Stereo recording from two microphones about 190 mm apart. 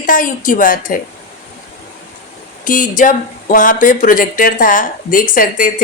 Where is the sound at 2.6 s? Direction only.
45° left (ahead or behind).